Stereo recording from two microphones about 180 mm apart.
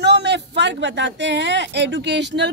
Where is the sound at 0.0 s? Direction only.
70° right (ahead or behind).